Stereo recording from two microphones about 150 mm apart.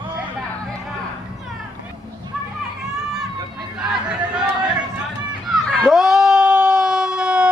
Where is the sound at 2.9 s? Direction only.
5° right (ahead or behind).